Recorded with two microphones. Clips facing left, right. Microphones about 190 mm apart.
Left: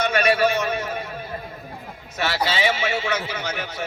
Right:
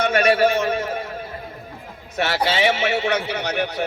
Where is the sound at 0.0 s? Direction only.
50° right (ahead or behind).